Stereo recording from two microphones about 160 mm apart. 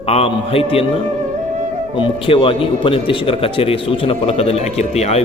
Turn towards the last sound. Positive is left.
turn(degrees=40)  # may be behind; listen again after turning